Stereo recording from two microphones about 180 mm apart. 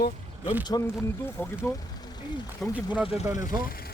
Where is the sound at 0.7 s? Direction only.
20° left (ahead or behind).